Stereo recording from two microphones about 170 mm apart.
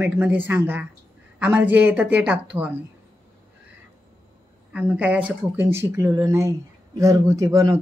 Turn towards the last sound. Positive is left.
turn(degrees=-20)  # may be behind; listen again after turning